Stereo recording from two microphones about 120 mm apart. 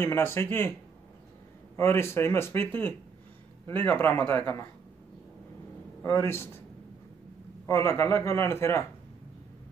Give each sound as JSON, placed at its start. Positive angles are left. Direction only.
{"t": 0.0, "sound": "speech", "side_deg": 20}
{"t": 1.8, "sound": "speech", "side_deg": 20}
{"t": 6.0, "sound": "speech", "side_deg": 20}
{"t": 7.6, "sound": "speech", "side_deg": 20}